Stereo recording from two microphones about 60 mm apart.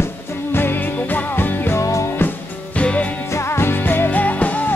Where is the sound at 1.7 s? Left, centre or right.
Left.